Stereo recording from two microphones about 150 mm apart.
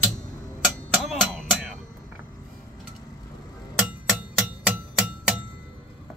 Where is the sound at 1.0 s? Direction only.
Centre (ahead or behind).